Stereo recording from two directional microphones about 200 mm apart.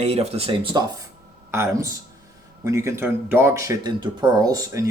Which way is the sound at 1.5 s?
15° right (ahead or behind).